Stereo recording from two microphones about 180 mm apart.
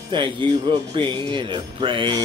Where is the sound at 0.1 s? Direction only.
25° right (ahead or behind).